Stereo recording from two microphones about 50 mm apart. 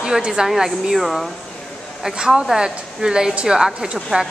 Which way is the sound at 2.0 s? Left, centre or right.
Centre.